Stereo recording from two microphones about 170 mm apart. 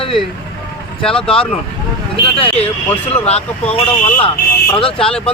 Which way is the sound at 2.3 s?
35° left (ahead or behind).